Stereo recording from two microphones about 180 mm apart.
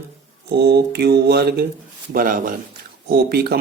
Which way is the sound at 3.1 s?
60° right (ahead or behind).